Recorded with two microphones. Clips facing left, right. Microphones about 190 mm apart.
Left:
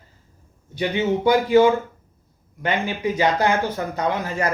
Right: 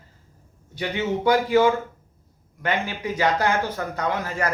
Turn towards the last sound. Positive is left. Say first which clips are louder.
# left 2 dB
turn(degrees=20)  # may be behind; listen again after turning